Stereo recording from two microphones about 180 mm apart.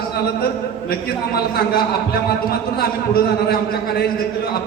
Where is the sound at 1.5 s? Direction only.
60° left (ahead or behind).